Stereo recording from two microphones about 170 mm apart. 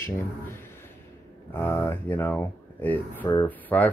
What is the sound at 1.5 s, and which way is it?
Speech, 10° left (ahead or behind).